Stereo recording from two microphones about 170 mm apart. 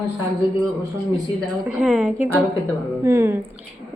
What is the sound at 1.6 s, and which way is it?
A woman's voice, 5° right (ahead or behind).